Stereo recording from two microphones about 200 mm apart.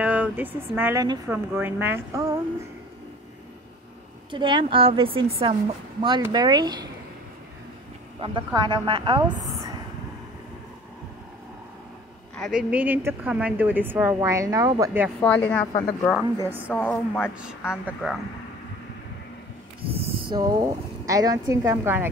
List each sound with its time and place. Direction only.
0.0 s a woman's voice: 5° right (ahead or behind)
4.3 s a woman's voice: 25° right (ahead or behind)
8.2 s a woman's voice: 25° right (ahead or behind)
12.4 s a woman's voice: 5° right (ahead or behind)
15.1 s a woman's voice: 5° left (ahead or behind)
16.4 s a woman's voice: 10° right (ahead or behind)
16.7 s a woman's voice: 5° left (ahead or behind)
17.8 s speech: centre (ahead or behind)
19.9 s speech: 30° right (ahead or behind); by 22.1 s 10° right (ahead or behind)